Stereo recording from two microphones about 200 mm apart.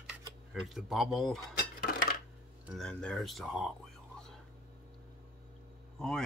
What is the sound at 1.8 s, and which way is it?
Dishes, 45° left (ahead or behind).